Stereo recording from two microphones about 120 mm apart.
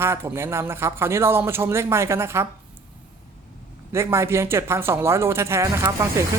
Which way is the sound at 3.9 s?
20° right (ahead or behind).